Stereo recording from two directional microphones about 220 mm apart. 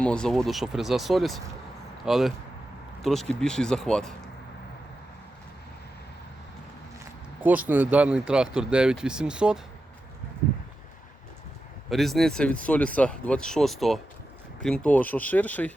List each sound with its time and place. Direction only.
0.0 s speech: 5° left (ahead or behind)
7.4 s speech: 10° right (ahead or behind)
11.9 s speech: centre (ahead or behind)